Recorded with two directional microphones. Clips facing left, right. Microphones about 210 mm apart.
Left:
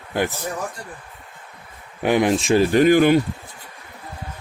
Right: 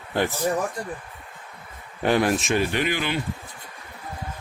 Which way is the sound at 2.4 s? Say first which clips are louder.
Left 8 dB; 35° left (ahead or behind).